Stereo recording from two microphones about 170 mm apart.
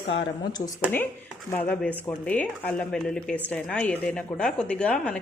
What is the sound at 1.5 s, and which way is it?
A woman's voice, 10° left (ahead or behind).